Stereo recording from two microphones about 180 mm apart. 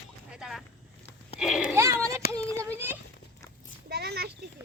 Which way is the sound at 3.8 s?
60° right (ahead or behind).